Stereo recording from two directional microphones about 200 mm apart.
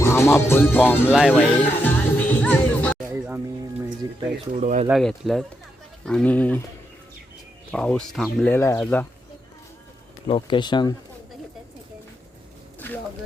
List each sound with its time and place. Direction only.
0.0 s music: 10° left (ahead or behind)
0.7 s speech: 10° left (ahead or behind)
1.3 s music: 10° left (ahead or behind)
3.1 s music: 10° right (ahead or behind)
4.0 s a sound: 20° right (ahead or behind)
4.5 s speech: 35° right (ahead or behind)
4.9 s speech: centre (ahead or behind)
7.7 s speech: 5° left (ahead or behind)
8.5 s speech: 15° left (ahead or behind)
10.2 s speech: 25° left (ahead or behind)